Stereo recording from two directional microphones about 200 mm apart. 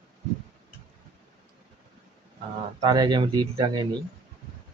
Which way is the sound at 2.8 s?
20° right (ahead or behind).